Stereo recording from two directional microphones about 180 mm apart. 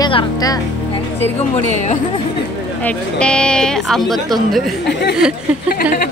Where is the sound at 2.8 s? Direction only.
5° left (ahead or behind).